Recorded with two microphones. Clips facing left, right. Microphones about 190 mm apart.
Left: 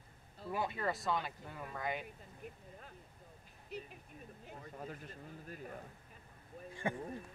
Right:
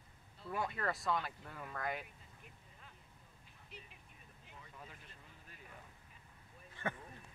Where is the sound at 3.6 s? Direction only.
45° left (ahead or behind).